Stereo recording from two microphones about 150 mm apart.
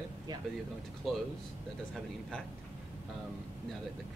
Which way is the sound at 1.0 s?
Centre (ahead or behind).